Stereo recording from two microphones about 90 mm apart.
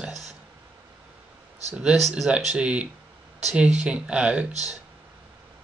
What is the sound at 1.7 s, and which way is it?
Speech, 10° right (ahead or behind).